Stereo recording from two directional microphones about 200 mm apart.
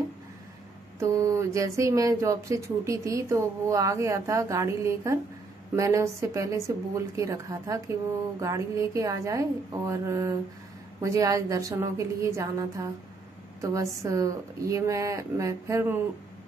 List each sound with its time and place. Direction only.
0.9 s speech: 15° right (ahead or behind)